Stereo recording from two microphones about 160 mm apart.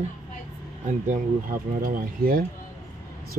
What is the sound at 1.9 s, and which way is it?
Speech, 65° right (ahead or behind).